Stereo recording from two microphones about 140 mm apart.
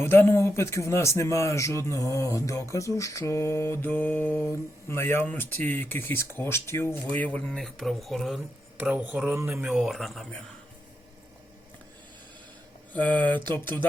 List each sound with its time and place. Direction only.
0.0 s a man's voice: 20° left (ahead or behind); by 8.4 s centre (ahead or behind)
8.8 s speech: 10° right (ahead or behind)
9.6 s speech: 5° right (ahead or behind)
12.9 s speech: 10° left (ahead or behind)